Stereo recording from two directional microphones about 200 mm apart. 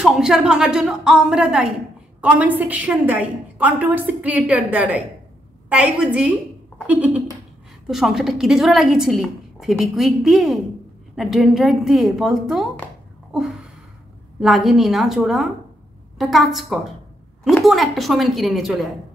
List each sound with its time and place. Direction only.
0.0 s a woman's voice: centre (ahead or behind)
13.3 s gasp: centre (ahead or behind)
14.4 s a woman's voice: centre (ahead or behind)